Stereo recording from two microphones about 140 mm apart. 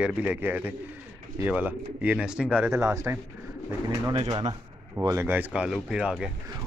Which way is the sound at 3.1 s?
20° right (ahead or behind).